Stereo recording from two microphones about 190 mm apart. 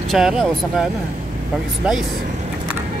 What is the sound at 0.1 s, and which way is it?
Speech, centre (ahead or behind).